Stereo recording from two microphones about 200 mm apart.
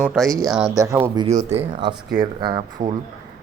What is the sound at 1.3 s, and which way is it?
Speech, 35° right (ahead or behind).